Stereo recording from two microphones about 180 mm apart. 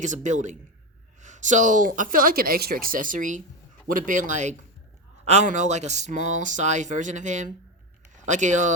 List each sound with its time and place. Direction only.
0.0 s speech: 45° right (ahead or behind)